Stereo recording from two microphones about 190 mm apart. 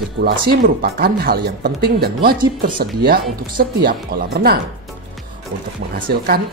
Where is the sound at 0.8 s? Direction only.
55° right (ahead or behind).